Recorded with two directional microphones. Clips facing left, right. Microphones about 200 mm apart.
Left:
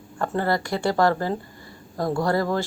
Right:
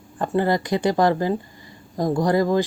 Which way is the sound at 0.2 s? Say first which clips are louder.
Right 3 dB; 15° right (ahead or behind).